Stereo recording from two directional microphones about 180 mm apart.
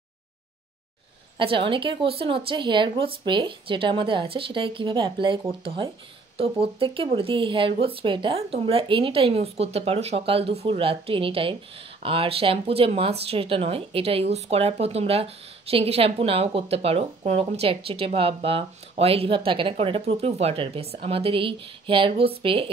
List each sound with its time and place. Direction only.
1.4 s a woman's voice: 30° right (ahead or behind)